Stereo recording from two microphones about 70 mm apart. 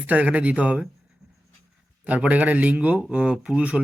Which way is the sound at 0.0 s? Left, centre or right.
Right.